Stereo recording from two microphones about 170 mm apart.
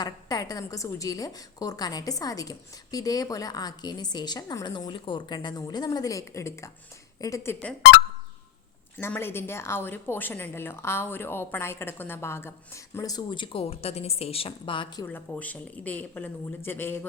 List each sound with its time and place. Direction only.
0.0 s a woman's voice: 25° left (ahead or behind)
9.0 s a woman's voice: 15° left (ahead or behind); by 15.0 s 30° left (ahead or behind)
15.0 s a woman's voice: 10° left (ahead or behind)